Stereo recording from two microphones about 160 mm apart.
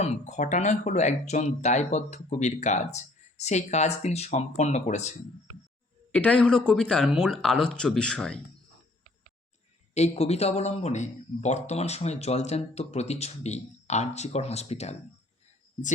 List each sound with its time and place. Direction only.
0.0 s speech: 45° left (ahead or behind)
6.1 s speech: 10° left (ahead or behind)
9.9 s speech: 45° left (ahead or behind)